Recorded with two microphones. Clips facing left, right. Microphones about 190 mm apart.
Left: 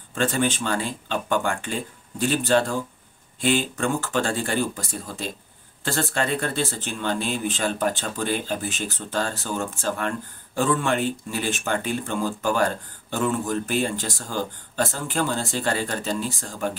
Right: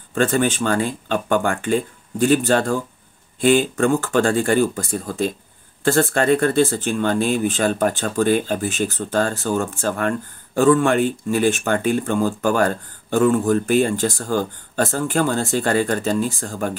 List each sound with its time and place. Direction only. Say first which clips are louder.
0.1 s speech: right 5 dB; 50° right (ahead or behind)